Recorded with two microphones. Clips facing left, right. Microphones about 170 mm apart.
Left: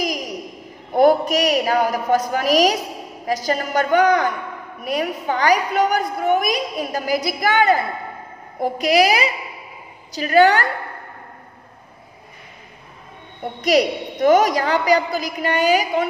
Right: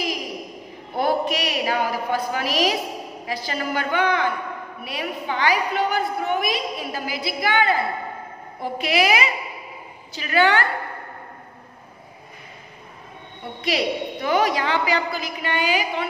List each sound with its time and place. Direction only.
0.9 s a woman's voice: 45° left (ahead or behind)
13.4 s a woman's voice: 45° left (ahead or behind)